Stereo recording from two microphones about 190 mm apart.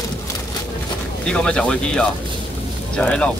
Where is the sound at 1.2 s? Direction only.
5° left (ahead or behind).